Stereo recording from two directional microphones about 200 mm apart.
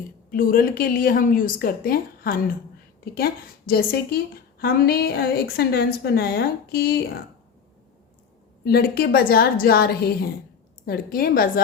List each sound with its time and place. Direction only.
0.3 s a woman's voice: 45° left (ahead or behind)
8.6 s a woman's voice: 50° left (ahead or behind)